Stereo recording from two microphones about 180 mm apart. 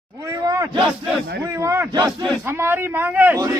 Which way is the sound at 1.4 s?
15° right (ahead or behind).